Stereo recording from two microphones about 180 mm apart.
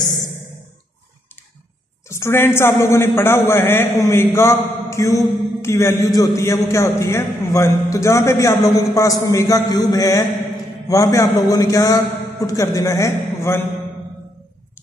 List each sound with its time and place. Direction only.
2.0 s a man's voice: 15° left (ahead or behind)